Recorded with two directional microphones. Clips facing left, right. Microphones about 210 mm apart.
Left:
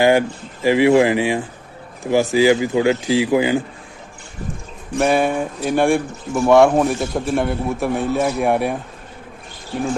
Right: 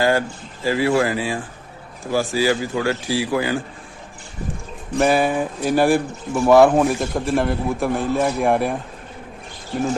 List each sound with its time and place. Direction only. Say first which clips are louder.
0.0 s speech: left 4 dB; 15° left (ahead or behind)
4.9 s speech: even; centre (ahead or behind)